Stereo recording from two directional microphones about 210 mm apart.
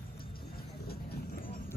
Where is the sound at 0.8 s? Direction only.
45° left (ahead or behind).